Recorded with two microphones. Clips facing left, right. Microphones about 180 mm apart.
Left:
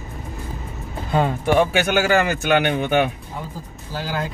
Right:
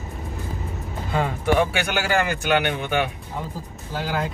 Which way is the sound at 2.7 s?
40° left (ahead or behind).